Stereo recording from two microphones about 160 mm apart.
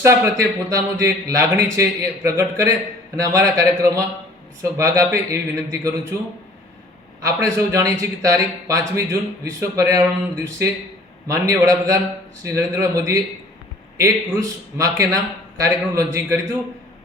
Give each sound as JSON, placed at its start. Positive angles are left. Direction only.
{"t": 0.0, "sound": "speech", "side_deg": -15}
{"t": 7.3, "sound": "speech", "side_deg": -20}